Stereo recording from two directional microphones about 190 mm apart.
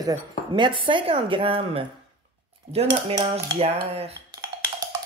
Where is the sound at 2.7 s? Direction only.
30° right (ahead or behind).